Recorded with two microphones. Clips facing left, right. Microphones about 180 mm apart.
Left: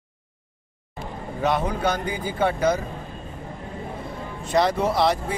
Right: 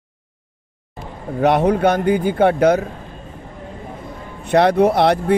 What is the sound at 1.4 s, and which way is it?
Speech, 65° right (ahead or behind).